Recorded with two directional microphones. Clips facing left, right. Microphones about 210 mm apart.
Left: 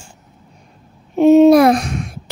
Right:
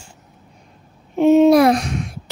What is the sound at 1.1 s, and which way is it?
Speech, 40° left (ahead or behind).